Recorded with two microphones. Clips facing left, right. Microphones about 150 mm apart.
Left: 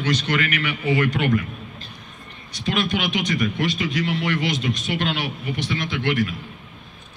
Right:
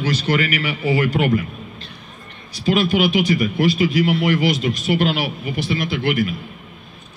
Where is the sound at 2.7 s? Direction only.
35° right (ahead or behind).